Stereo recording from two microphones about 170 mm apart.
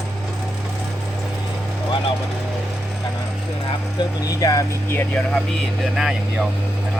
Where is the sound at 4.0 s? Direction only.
20° left (ahead or behind).